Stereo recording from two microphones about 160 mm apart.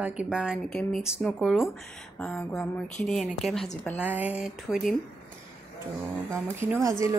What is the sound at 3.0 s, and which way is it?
Speech, centre (ahead or behind).